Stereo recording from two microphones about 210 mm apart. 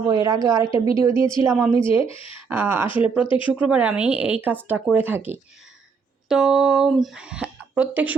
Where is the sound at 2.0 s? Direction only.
25° left (ahead or behind).